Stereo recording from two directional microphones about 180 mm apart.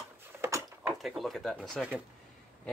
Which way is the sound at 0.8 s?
Centre (ahead or behind).